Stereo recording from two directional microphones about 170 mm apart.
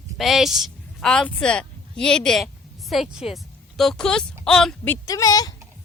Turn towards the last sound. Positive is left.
turn(degrees=20)  # may be behind; listen again after turning